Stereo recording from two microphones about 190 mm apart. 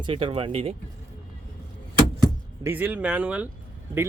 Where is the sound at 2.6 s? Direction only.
10° right (ahead or behind).